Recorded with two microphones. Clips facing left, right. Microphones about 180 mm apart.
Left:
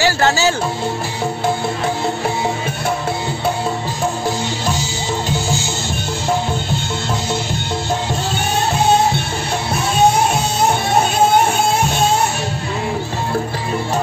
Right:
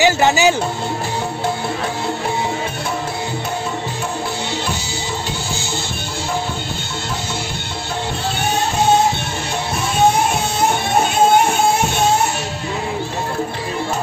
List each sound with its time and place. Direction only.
0.0 s speech: 15° right (ahead or behind)